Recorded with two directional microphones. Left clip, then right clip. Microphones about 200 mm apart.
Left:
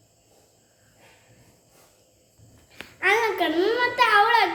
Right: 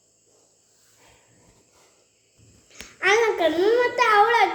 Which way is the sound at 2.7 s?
10° left (ahead or behind).